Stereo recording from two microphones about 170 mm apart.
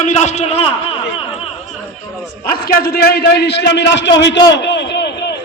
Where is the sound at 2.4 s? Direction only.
60° left (ahead or behind); by 5.3 s 90° left.